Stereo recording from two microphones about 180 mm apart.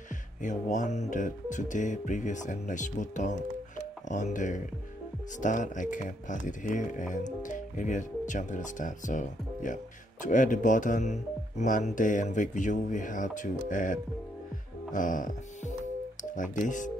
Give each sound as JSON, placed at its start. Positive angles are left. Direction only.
{"t": 0.4, "sound": "speech", "side_deg": 45}
{"t": 14.9, "sound": "music", "side_deg": 45}
{"t": 16.2, "sound": "speech", "side_deg": 45}